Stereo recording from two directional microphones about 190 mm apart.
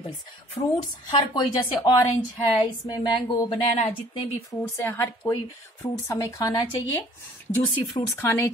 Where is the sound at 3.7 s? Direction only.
35° left (ahead or behind).